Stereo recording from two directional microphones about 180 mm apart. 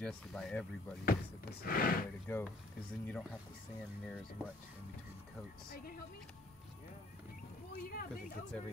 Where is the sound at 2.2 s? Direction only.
10° left (ahead or behind).